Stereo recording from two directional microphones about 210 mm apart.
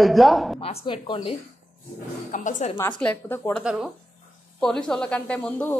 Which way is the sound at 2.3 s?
35° left (ahead or behind).